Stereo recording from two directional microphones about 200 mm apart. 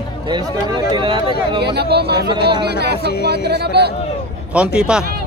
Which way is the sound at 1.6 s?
55° right (ahead or behind).